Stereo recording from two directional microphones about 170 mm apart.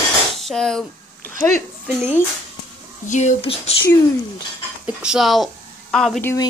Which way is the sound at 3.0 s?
45° left (ahead or behind).